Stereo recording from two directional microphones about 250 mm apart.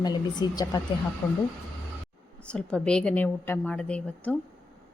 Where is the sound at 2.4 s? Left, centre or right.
Centre.